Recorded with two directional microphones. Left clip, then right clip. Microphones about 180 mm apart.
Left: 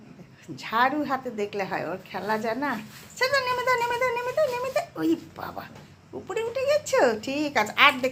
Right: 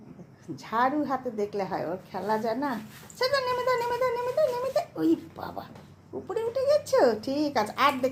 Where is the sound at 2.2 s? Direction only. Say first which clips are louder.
Left 1 dB; 15° right (ahead or behind).